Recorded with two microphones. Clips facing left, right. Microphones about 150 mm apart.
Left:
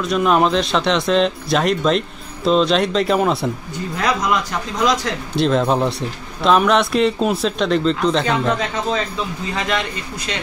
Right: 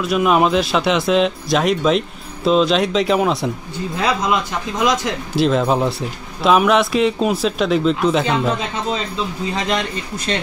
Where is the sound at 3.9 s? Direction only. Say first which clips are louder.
Right 1 dB; 25° right (ahead or behind).